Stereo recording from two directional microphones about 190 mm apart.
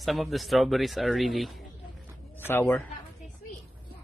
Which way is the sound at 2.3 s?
10° left (ahead or behind).